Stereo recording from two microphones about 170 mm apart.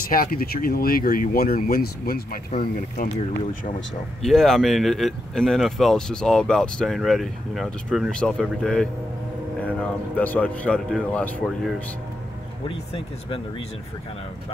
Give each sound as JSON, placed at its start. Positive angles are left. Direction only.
{"t": 0.1, "sound": "speech", "side_deg": 60}
{"t": 4.2, "sound": "speech", "side_deg": 0}
{"t": 12.6, "sound": "speech", "side_deg": 35}